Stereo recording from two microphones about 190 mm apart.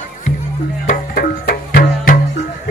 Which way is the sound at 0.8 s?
50° left (ahead or behind).